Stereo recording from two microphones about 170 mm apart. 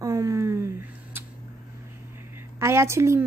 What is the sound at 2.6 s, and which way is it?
Speech, 15° right (ahead or behind).